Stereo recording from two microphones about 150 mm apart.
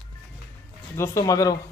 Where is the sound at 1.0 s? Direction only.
20° left (ahead or behind).